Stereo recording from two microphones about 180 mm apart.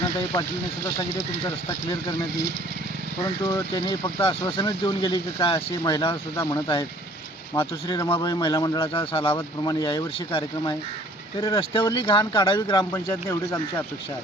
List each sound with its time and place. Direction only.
3.4 s speech: 20° left (ahead or behind)
4.2 s speech: 30° left (ahead or behind); by 13.8 s 15° left (ahead or behind)